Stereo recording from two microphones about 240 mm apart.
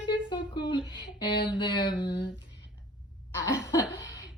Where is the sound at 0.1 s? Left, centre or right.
Centre.